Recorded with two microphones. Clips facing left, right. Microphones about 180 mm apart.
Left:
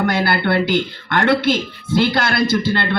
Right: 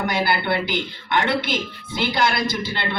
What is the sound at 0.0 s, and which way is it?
A man's voice, 60° left (ahead or behind).